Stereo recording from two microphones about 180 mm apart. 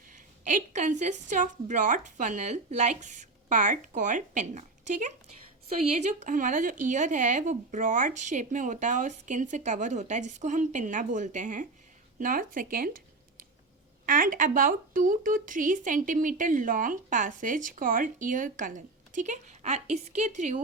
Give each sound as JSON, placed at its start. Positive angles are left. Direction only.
{"t": 0.1, "sound": "speech", "side_deg": -45}